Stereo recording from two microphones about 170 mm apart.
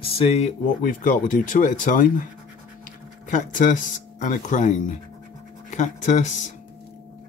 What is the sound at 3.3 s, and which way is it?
Speech, 50° left (ahead or behind).